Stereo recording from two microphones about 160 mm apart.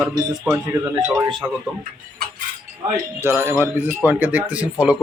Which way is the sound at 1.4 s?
20° right (ahead or behind).